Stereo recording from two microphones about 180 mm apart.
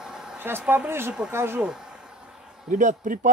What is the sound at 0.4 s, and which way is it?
Speech, 10° right (ahead or behind).